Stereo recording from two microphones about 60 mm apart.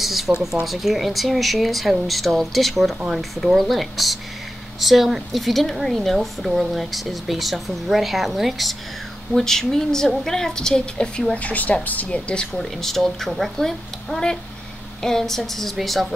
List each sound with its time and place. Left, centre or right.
0.0 s a sound: centre
0.3 s a woman's voice: centre
11.3 s a woman's voice: left
12.5 s speech: centre